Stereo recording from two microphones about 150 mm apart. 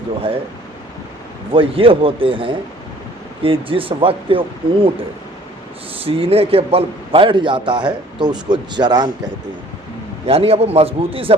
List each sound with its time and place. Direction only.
1.5 s a man's voice: 35° right (ahead or behind)
6.1 s a man's voice: 40° right (ahead or behind)
10.2 s a man's voice: 40° right (ahead or behind)